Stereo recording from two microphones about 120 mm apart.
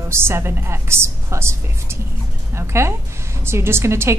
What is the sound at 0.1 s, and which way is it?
A woman's voice, 20° right (ahead or behind).